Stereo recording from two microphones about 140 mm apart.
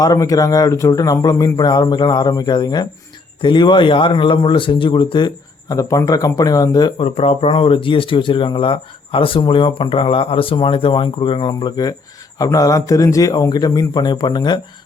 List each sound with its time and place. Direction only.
0.0 s speech: 25° left (ahead or behind)
5.7 s speech: 25° left (ahead or behind)
7.0 s speech: 45° left (ahead or behind)